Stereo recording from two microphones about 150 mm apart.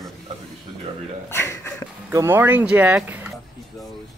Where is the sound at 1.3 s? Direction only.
20° left (ahead or behind).